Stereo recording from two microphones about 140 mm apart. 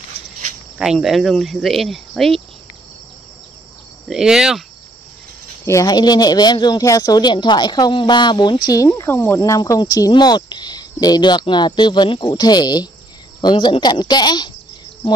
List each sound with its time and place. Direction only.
0.7 s speech: 5° right (ahead or behind)
4.1 s speech: 5° right (ahead or behind)
5.7 s speech: 25° left (ahead or behind)